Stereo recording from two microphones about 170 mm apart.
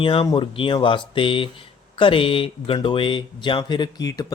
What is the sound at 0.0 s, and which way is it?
Speech, 30° left (ahead or behind).